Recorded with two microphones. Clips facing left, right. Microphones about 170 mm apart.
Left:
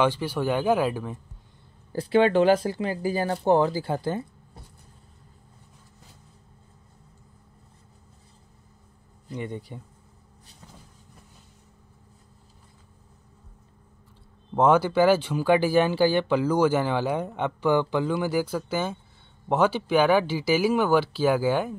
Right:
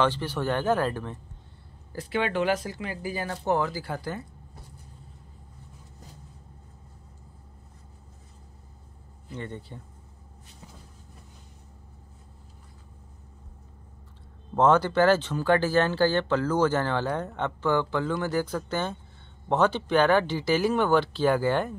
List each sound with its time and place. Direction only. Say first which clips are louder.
0.0 s speech: left 2 dB; 10° left (ahead or behind)
1.9 s speech: left 8 dB; 30° left (ahead or behind)
9.3 s speech: left 4 dB; 15° left (ahead or behind)
14.5 s speech: left 1 dB; 10° left (ahead or behind)